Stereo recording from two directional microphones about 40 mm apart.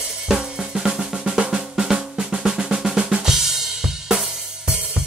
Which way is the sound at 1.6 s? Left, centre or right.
Centre.